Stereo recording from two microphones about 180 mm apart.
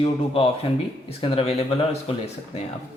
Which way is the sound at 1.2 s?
30° left (ahead or behind).